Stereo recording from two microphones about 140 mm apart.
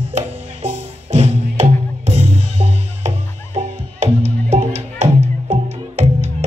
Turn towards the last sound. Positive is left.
turn(degrees=-55)  # may be behind; listen again after turning